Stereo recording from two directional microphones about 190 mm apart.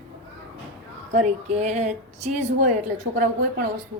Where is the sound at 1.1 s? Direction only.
40° right (ahead or behind).